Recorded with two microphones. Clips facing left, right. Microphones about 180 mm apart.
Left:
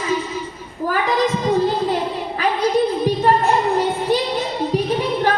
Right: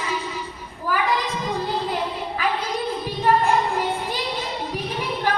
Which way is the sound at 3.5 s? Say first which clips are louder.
Left 4 dB; 40° left (ahead or behind).